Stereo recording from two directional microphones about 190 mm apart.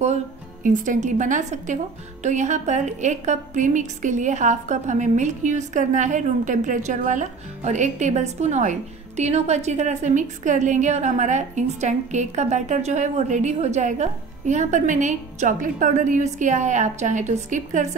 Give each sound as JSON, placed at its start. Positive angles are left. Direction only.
{"t": 0.7, "sound": "a woman's voice", "side_deg": -40}